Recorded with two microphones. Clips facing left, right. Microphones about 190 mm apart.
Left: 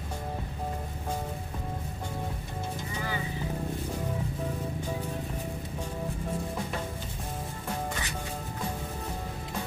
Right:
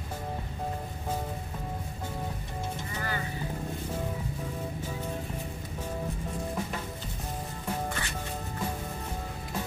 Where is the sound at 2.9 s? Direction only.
15° left (ahead or behind).